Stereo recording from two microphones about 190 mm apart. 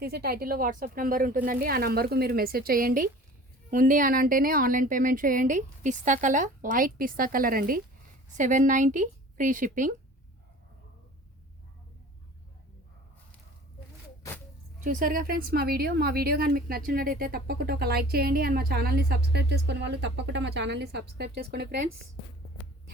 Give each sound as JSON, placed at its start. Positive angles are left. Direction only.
{"t": 0.0, "sound": "a woman's voice", "side_deg": -55}
{"t": 14.8, "sound": "speech", "side_deg": -45}